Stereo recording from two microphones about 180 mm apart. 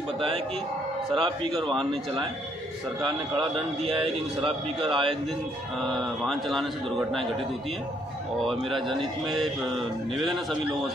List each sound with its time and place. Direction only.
1.1 s a man's voice: 30° right (ahead or behind)
3.0 s a man's voice: 30° right (ahead or behind)
5.8 s a man's voice: centre (ahead or behind)
8.5 s a man's voice: centre (ahead or behind)